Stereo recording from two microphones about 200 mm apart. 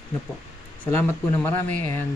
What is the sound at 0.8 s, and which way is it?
A man's voice, 10° left (ahead or behind).